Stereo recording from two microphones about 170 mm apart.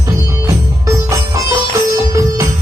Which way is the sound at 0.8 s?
20° right (ahead or behind).